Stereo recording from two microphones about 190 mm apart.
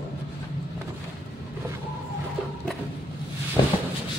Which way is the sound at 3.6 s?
25° left (ahead or behind).